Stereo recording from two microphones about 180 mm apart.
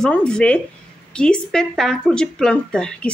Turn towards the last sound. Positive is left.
turn(degrees=5)  # may be behind; listen again after turning